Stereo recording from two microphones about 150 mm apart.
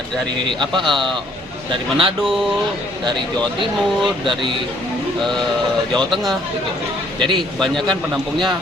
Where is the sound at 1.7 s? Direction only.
35° right (ahead or behind).